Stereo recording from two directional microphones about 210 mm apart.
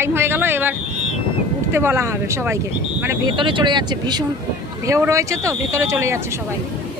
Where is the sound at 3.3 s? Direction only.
25° right (ahead or behind).